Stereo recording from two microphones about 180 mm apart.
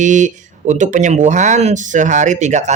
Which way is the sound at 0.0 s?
45° right (ahead or behind).